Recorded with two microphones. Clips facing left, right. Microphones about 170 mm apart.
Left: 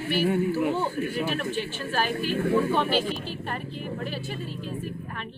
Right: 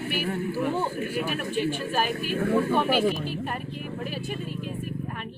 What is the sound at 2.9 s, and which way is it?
Speech, 45° right (ahead or behind).